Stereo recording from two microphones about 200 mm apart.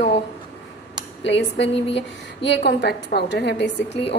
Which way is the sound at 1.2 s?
65° left (ahead or behind).